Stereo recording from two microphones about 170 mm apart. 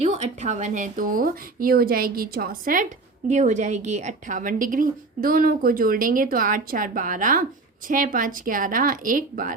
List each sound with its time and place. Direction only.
0.0 s speech: 40° right (ahead or behind); by 2.8 s 55° right (ahead or behind)
3.2 s a woman's voice: 45° right (ahead or behind)